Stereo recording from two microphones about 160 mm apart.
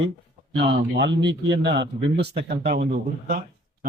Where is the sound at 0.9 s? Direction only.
90° right; by 3.4 s 70° right (ahead or behind).